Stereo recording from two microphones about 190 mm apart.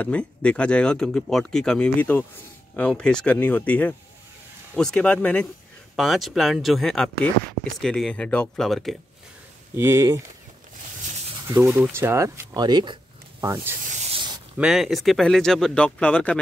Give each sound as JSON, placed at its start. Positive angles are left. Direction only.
{"t": 0.0, "sound": "speech", "side_deg": 5}
{"t": 9.8, "sound": "speech", "side_deg": -15}
{"t": 11.4, "sound": "speech", "side_deg": -15}
{"t": 13.9, "sound": "rub", "side_deg": -35}
{"t": 14.6, "sound": "speech", "side_deg": 0}